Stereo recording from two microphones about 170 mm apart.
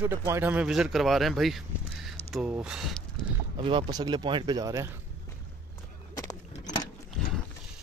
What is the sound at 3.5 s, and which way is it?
Speech, 30° right (ahead or behind).